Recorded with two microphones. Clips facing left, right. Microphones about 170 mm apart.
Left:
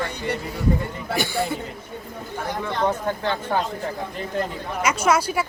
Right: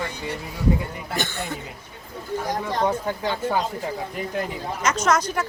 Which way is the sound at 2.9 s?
10° right (ahead or behind).